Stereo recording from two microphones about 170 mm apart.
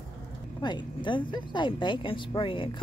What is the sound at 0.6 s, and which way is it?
Speech, 25° left (ahead or behind).